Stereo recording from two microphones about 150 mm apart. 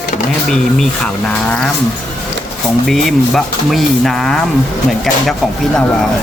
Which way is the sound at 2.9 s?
Centre (ahead or behind).